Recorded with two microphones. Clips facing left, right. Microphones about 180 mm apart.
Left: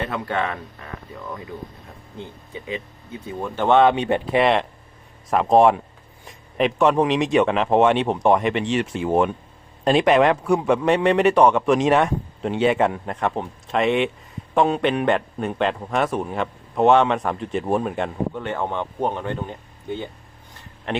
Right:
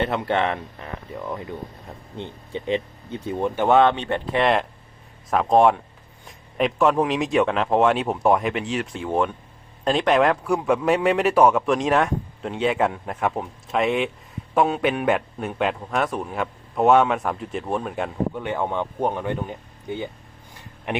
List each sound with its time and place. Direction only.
0.0 s speech: 25° right (ahead or behind)
2.1 s speech: 30° right (ahead or behind)
3.4 s speech: 10° right (ahead or behind)
3.8 s a man's voice: 10° left (ahead or behind); by 20.1 s 15° right (ahead or behind)
20.5 s a sound: 15° right (ahead or behind)